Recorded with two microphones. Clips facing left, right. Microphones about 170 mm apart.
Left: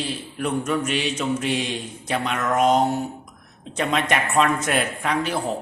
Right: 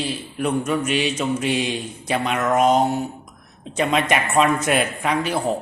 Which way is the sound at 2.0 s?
5° right (ahead or behind).